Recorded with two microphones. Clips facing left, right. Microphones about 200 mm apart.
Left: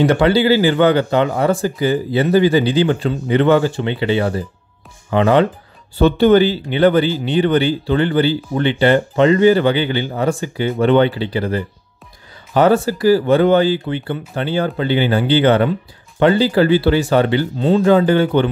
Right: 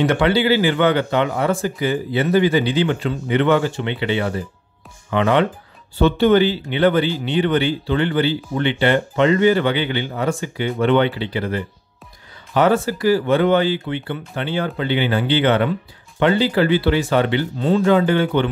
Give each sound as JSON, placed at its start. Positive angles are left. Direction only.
{"t": 0.0, "sound": "speech", "side_deg": 35}